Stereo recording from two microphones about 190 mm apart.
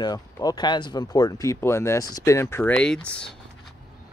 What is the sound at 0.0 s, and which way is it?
Speech, 20° left (ahead or behind).